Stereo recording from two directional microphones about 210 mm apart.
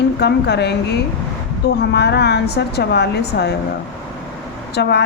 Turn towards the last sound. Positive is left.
turn(degrees=55)  # may be behind; listen again after turning